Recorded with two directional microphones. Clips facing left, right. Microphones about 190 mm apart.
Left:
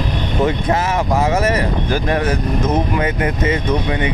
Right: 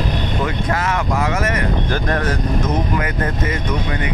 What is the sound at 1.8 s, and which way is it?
Speech, 10° left (ahead or behind).